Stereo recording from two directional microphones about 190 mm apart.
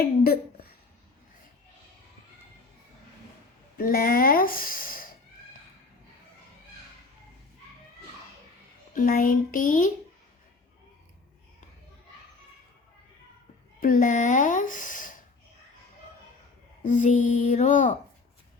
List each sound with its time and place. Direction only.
3.8 s speech: 50° left (ahead or behind)
9.0 s speech: 45° left (ahead or behind)
13.7 s speech: 45° left (ahead or behind)
16.8 s speech: 40° left (ahead or behind)